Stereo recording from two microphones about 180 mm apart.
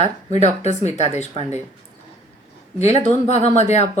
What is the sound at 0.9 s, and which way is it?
Speech, 40° left (ahead or behind).